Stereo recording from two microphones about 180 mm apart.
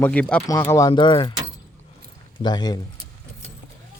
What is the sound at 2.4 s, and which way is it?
Speech, 25° left (ahead or behind).